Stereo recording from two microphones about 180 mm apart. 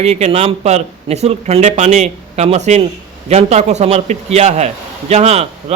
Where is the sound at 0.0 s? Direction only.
35° right (ahead or behind).